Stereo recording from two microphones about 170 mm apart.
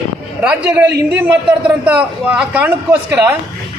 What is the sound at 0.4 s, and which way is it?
A man's voice, 5° right (ahead or behind).